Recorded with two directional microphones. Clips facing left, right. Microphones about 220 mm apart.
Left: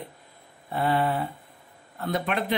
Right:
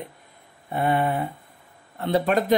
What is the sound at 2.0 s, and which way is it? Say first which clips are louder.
Speech: right 6 dB; 35° right (ahead or behind).